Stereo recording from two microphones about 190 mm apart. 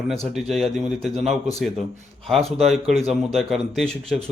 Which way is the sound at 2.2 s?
Centre (ahead or behind).